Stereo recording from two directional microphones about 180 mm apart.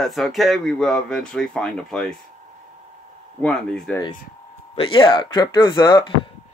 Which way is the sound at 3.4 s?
5° left (ahead or behind).